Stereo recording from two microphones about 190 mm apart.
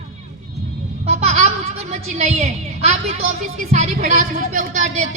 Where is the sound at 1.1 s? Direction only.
35° right (ahead or behind).